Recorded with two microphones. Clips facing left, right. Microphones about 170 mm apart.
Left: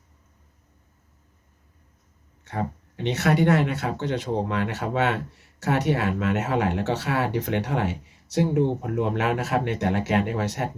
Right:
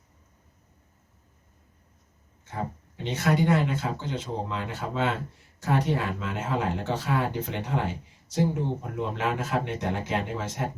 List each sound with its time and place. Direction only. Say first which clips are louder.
2.4 s speech: left 4 dB; 70° left (ahead or behind)